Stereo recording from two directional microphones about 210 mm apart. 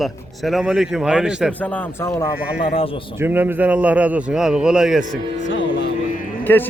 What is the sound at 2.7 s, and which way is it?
Speech, 25° left (ahead or behind).